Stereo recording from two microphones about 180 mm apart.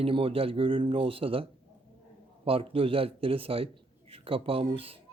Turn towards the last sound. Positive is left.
turn(degrees=-30)  # may be behind; listen again after turning